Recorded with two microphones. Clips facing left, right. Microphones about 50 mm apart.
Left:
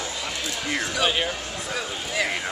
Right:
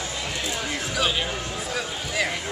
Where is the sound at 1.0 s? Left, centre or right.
Centre.